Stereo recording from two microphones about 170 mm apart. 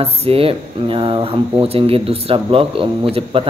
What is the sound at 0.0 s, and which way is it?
Speech, 35° right (ahead or behind).